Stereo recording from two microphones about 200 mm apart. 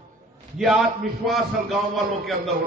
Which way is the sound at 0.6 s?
Centre (ahead or behind).